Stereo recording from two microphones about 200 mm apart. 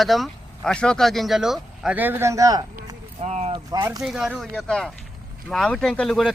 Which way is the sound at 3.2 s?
35° right (ahead or behind).